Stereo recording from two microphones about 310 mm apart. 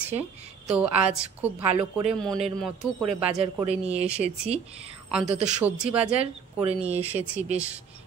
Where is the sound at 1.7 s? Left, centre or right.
Centre.